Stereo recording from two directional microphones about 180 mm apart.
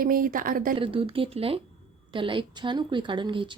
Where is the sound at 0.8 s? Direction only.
30° right (ahead or behind).